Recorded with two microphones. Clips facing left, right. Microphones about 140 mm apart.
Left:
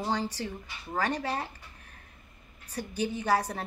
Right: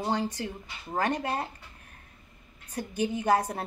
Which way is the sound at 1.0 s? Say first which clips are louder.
Right 2 dB; 50° right (ahead or behind).